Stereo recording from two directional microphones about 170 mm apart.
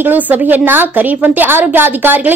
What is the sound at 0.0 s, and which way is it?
A woman's voice, 10° right (ahead or behind).